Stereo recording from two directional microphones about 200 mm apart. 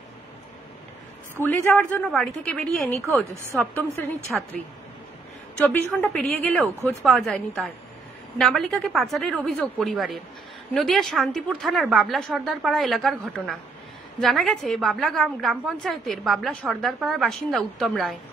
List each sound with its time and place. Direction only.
1.4 s a woman's voice: 10° left (ahead or behind)
4.3 s a woman's voice: centre (ahead or behind)
5.7 s a woman's voice: 5° left (ahead or behind)